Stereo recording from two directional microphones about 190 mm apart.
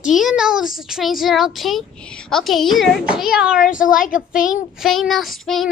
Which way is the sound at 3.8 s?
45° left (ahead or behind).